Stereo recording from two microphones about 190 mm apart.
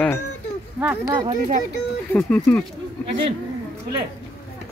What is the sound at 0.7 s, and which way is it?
Speech, 10° right (ahead or behind).